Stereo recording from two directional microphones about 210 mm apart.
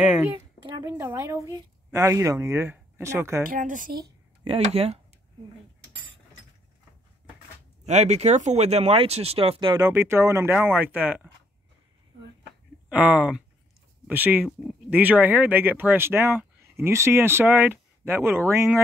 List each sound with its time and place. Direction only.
0.0 s speech: 5° right (ahead or behind)
3.4 s speech: 40° right (ahead or behind)
4.7 s speech: 30° right (ahead or behind)
7.8 s speech: 30° right (ahead or behind)
9.8 s speech: 10° right (ahead or behind)
12.9 s speech: 5° right (ahead or behind)